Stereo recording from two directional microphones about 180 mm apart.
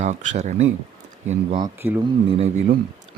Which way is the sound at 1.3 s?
25° right (ahead or behind).